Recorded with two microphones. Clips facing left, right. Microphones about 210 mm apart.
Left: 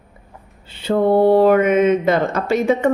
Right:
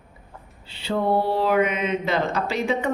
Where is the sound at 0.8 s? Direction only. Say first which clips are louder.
Left 8 dB; 50° left (ahead or behind).